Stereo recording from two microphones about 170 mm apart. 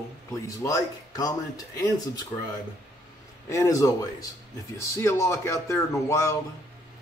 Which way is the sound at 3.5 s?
20° left (ahead or behind).